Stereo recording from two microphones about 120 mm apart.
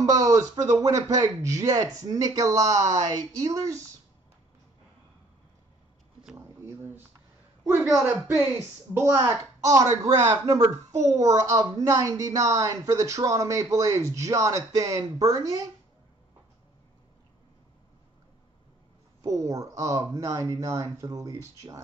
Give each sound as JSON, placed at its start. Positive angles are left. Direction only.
{"t": 0.0, "sound": "speech", "side_deg": -30}
{"t": 6.3, "sound": "a sound", "side_deg": -20}
{"t": 8.3, "sound": "speech", "side_deg": -20}
{"t": 19.2, "sound": "speech", "side_deg": -25}